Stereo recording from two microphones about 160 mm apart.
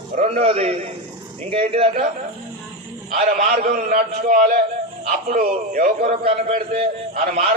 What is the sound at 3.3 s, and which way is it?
A man's voice, 50° right (ahead or behind).